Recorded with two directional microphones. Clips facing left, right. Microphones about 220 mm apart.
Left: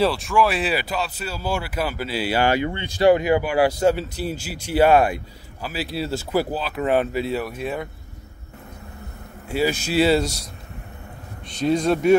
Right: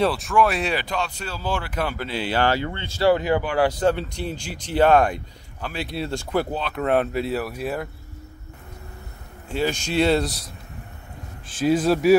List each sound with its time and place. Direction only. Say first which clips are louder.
0.0 s speech: even; centre (ahead or behind)
9.5 s speech: left 2 dB; 5° left (ahead or behind)